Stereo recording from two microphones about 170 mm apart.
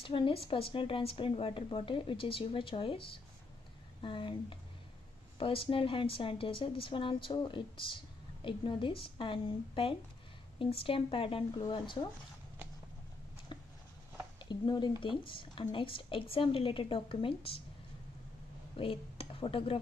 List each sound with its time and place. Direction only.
0.0 s a woman's voice: 30° left (ahead or behind)
13.5 s a sound: 25° left (ahead or behind)
14.5 s a woman's voice: 25° left (ahead or behind)
18.8 s speech: 30° left (ahead or behind)